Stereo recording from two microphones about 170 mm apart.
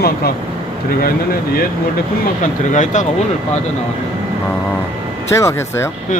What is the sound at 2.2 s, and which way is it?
Speech, 50° left (ahead or behind).